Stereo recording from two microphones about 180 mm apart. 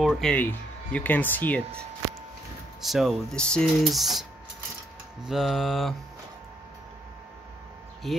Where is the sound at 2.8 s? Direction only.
Centre (ahead or behind).